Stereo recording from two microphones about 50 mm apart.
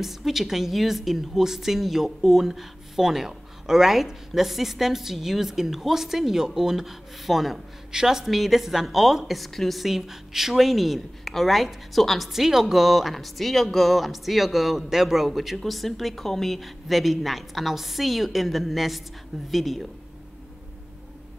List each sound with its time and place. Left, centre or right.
0.0 s a woman's voice: centre
12.3 s a woman's voice: centre